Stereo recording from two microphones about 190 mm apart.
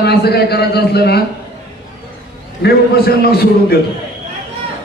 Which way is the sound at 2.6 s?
55° left (ahead or behind).